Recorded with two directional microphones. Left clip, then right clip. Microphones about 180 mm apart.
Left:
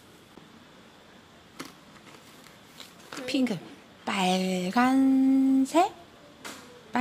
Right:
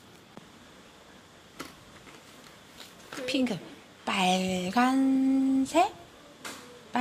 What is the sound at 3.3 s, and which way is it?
A woman's voice, 25° left (ahead or behind).